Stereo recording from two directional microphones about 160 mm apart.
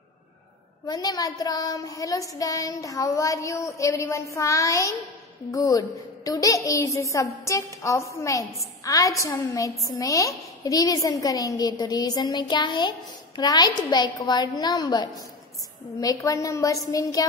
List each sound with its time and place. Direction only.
0.8 s child singing: 25° left (ahead or behind)